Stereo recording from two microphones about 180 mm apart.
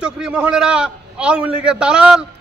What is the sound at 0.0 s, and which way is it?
A man's voice, 5° right (ahead or behind).